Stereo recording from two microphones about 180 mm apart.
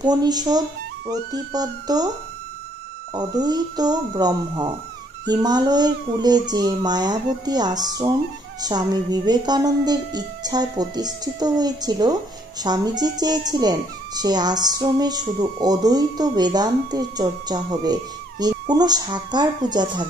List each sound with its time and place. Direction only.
0.0 s speech: 20° right (ahead or behind)
3.2 s speech: 20° right (ahead or behind)